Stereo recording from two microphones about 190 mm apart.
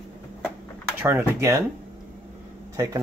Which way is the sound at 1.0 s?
15° right (ahead or behind).